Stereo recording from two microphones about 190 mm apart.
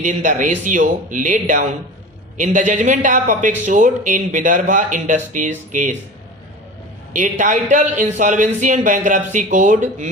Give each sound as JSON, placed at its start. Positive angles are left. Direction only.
{"t": 0.0, "sound": "a man's voice", "side_deg": -40}
{"t": 7.1, "sound": "a man's voice", "side_deg": -40}